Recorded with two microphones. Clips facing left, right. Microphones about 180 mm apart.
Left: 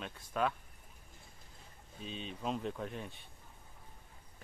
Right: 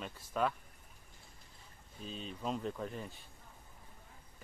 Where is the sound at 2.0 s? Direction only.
Centre (ahead or behind).